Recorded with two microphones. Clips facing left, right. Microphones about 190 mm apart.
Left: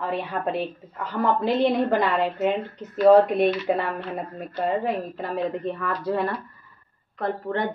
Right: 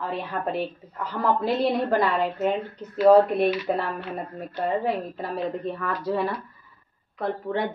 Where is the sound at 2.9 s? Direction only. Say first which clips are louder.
Left 1 dB; 5° right (ahead or behind).